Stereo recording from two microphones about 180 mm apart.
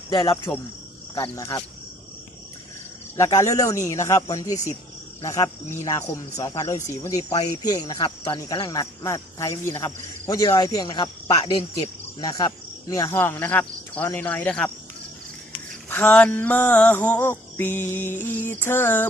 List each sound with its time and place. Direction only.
0.1 s speech: 25° left (ahead or behind)
3.2 s speech: 15° left (ahead or behind)
5.2 s music: 15° left (ahead or behind)
6.8 s speech: 15° left (ahead or behind)
12.2 s music: 20° left (ahead or behind)
15.9 s music: 10° left (ahead or behind)